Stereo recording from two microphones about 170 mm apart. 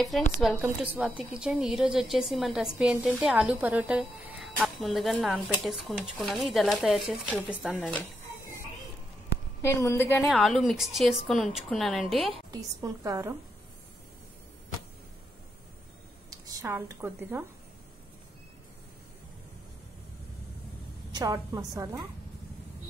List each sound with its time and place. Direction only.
0.4 s a woman's voice: 5° right (ahead or behind)
9.6 s a woman's voice: 15° left (ahead or behind)
10.2 s a woman's voice: centre (ahead or behind)
12.4 s a woman's voice: 20° right (ahead or behind)
16.3 s speech: 20° right (ahead or behind)
21.1 s a woman's voice: 20° right (ahead or behind)